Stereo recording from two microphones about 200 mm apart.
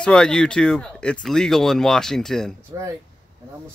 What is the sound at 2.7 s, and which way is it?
Speech, 15° right (ahead or behind).